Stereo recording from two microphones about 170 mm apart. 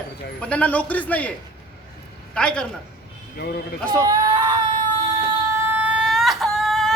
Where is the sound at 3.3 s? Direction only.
70° left (ahead or behind).